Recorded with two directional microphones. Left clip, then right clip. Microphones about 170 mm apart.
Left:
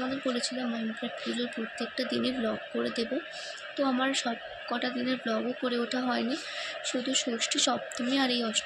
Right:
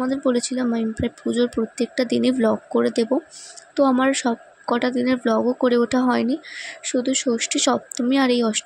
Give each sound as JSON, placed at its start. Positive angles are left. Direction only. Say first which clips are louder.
{"t": 0.1, "sound": "a woman's voice", "louder": "right 10 dB", "side_deg": -75}